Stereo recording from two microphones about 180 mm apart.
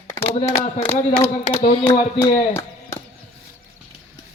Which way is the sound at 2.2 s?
15° left (ahead or behind).